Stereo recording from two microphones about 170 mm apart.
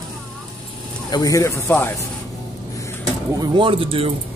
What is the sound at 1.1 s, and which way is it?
Speech, 20° left (ahead or behind).